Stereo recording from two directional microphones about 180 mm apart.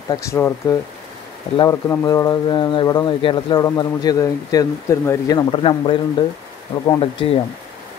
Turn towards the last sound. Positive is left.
turn(degrees=30)  # may be behind; listen again after turning